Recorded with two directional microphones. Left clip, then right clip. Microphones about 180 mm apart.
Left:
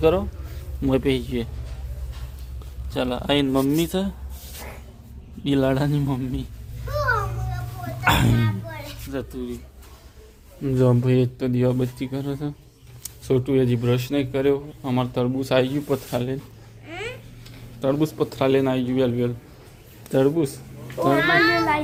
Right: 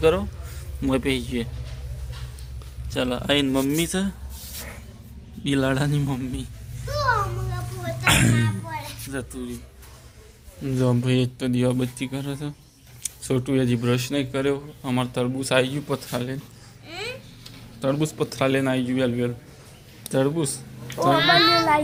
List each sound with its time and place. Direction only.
0.0 s a man's voice: 15° left (ahead or behind)
2.9 s a man's voice: 5° left (ahead or behind)
5.4 s a man's voice: 10° left (ahead or behind)
8.0 s music: 15° left (ahead or behind)
9.0 s speech: 15° left (ahead or behind)
10.6 s speech: 30° left (ahead or behind)
13.3 s a man's voice: 10° left (ahead or behind)
16.8 s a sound: centre (ahead or behind)
17.7 s a man's voice: 10° left (ahead or behind)
20.8 s a sound: centre (ahead or behind)